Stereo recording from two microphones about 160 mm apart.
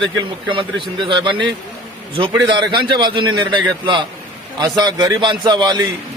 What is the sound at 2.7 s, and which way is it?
A man's voice, 30° right (ahead or behind).